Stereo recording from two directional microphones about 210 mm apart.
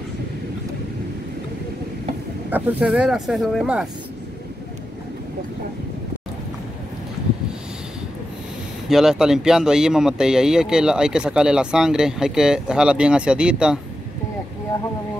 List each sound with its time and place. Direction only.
2.5 s speech: 5° right (ahead or behind)
8.8 s speech: centre (ahead or behind)